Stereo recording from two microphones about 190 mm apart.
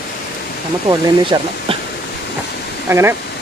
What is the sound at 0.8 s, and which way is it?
Speech, 20° right (ahead or behind).